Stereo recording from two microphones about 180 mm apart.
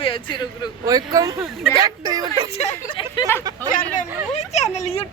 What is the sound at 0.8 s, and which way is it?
Speech, 20° right (ahead or behind).